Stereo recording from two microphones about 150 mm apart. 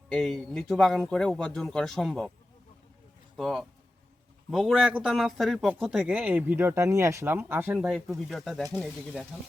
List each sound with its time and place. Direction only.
0.1 s speech: 5° left (ahead or behind)
3.3 s speech: centre (ahead or behind)
7.9 s speech: centre (ahead or behind)